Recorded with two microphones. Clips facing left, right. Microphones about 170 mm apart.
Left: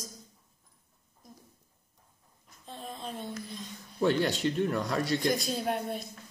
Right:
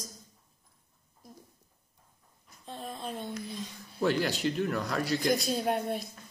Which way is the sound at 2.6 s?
Centre (ahead or behind).